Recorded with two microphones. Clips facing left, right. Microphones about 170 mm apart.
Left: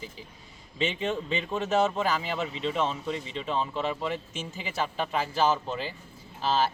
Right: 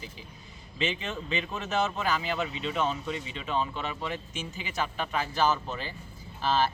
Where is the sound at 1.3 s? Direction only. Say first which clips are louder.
Left 4 dB; 30° left (ahead or behind).